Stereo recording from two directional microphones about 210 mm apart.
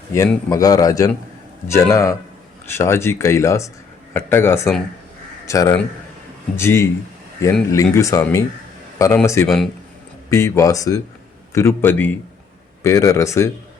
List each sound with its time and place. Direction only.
0.5 s speech: 15° left (ahead or behind)